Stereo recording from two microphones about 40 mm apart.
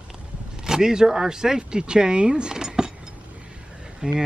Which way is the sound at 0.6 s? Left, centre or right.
Centre.